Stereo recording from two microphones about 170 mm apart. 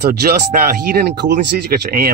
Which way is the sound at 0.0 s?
65° right (ahead or behind).